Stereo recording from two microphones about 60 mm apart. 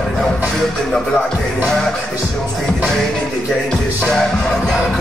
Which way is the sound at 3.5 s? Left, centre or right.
Centre.